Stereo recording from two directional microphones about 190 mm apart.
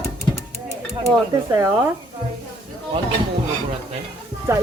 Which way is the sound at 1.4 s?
15° right (ahead or behind).